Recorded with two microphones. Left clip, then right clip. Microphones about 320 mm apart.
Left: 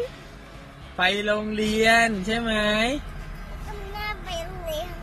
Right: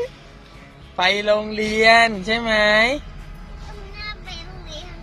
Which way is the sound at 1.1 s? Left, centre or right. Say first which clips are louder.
Right 6 dB; right.